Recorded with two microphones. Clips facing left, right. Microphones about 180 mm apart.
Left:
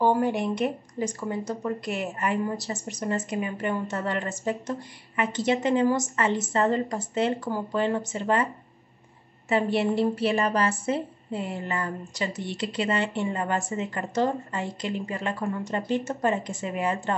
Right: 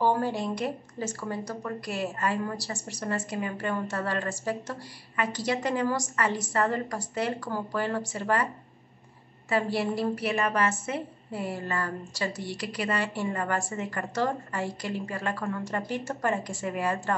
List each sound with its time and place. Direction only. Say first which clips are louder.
0.0 s speech: left 3 dB; 20° left (ahead or behind)
9.5 s speech: left 3 dB; 20° left (ahead or behind)